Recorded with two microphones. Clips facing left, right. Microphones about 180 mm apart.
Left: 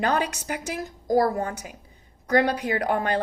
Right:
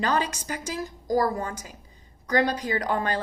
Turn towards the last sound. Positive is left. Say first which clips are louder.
# left 2 dB
turn(degrees=60)  # may be behind; listen again after turning